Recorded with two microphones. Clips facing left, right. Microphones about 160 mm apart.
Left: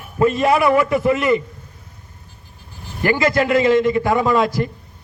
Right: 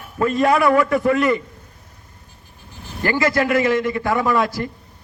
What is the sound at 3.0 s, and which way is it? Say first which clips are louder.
A man's voice: left 2 dB; 20° left (ahead or behind).